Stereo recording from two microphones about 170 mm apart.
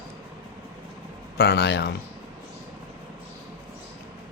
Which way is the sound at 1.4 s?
80° left.